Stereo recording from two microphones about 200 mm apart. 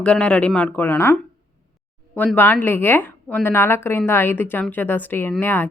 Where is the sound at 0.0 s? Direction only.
5° left (ahead or behind).